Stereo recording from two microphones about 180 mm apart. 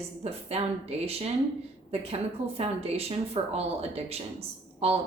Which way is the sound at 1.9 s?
35° right (ahead or behind).